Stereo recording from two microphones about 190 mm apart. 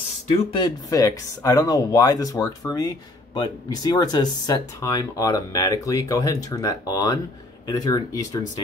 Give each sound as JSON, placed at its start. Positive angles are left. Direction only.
{"t": 0.5, "sound": "speech", "side_deg": 20}